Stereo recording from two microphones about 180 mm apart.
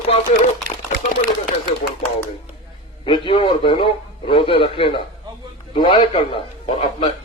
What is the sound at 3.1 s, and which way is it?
A man's voice, 30° left (ahead or behind).